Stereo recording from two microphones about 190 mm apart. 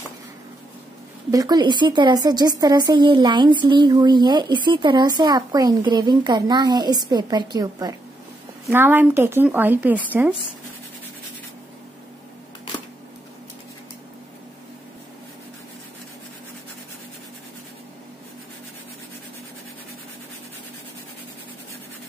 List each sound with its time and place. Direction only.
1.3 s a woman's voice: 20° right (ahead or behind)